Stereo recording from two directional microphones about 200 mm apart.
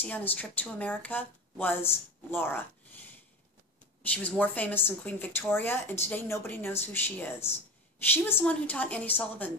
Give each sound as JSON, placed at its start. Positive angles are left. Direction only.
{"t": 0.0, "sound": "speech", "side_deg": 10}
{"t": 4.1, "sound": "speech", "side_deg": 5}